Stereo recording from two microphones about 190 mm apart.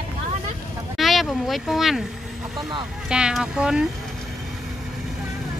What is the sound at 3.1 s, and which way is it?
Speech, 5° right (ahead or behind).